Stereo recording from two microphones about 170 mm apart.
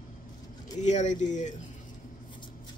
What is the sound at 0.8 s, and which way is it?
Speech, 45° left (ahead or behind).